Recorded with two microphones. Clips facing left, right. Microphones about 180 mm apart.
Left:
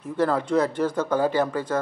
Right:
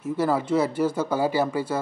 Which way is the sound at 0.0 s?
10° right (ahead or behind).